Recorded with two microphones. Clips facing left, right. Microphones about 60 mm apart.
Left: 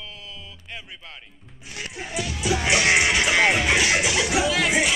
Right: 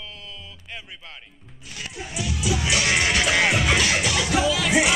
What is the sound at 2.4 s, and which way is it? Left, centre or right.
Music, left.